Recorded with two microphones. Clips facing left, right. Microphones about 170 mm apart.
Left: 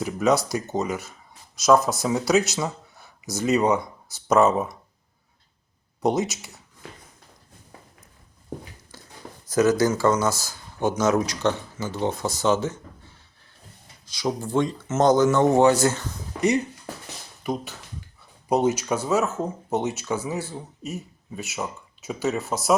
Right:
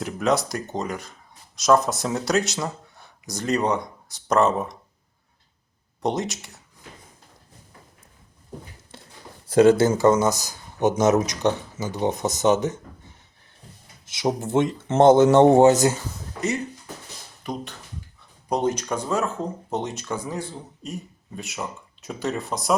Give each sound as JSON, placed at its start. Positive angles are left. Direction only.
{"t": 0.0, "sound": "speech", "side_deg": 0}
{"t": 6.0, "sound": "speech", "side_deg": 0}
{"t": 9.5, "sound": "speech", "side_deg": -30}
{"t": 14.0, "sound": "speech", "side_deg": -25}
{"t": 17.4, "sound": "speech", "side_deg": 5}